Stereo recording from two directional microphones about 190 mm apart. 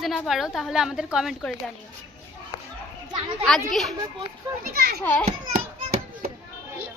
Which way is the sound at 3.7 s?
Centre (ahead or behind).